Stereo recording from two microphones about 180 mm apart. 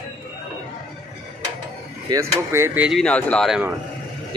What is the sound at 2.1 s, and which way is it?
Speech, 15° right (ahead or behind).